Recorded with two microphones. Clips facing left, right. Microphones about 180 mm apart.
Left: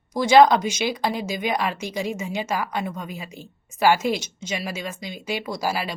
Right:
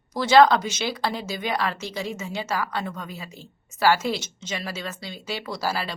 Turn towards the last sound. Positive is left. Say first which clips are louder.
# left 2 dB
turn(degrees=15)  # may be behind; listen again after turning